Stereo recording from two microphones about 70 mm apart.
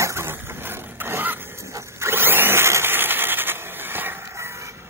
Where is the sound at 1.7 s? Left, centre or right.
Right.